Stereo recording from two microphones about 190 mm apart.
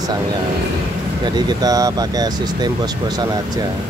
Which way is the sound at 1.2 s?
20° right (ahead or behind).